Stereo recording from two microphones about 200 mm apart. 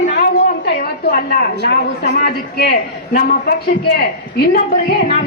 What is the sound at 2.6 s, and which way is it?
Speech, 50° left (ahead or behind).